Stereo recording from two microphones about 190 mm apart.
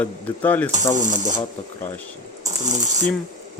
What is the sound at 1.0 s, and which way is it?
Speech, 40° right (ahead or behind).